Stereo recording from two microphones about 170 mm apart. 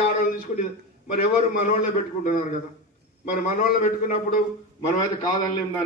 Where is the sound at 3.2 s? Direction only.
50° left (ahead or behind).